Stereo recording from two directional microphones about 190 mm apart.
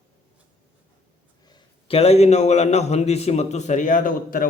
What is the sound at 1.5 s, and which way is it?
A man's voice, 25° left (ahead or behind).